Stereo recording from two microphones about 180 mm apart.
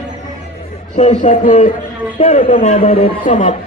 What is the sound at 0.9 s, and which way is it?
Speech, 35° left (ahead or behind).